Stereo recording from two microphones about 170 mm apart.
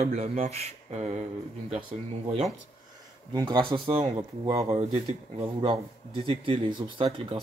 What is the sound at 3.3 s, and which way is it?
Speech, 25° right (ahead or behind).